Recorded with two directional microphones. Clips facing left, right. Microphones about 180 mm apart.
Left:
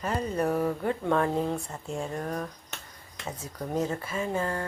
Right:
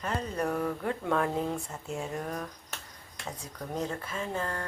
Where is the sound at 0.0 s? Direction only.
5° left (ahead or behind).